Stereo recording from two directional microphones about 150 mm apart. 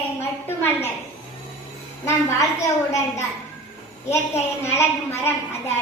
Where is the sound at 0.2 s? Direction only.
15° left (ahead or behind).